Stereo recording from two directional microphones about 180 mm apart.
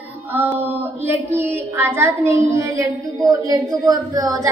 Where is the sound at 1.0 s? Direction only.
15° right (ahead or behind).